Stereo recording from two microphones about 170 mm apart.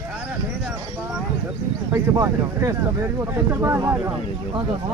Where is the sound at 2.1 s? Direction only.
20° right (ahead or behind).